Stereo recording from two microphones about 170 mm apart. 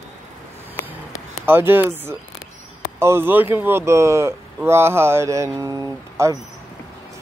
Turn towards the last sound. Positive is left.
turn(degrees=-20)  # may be behind; listen again after turning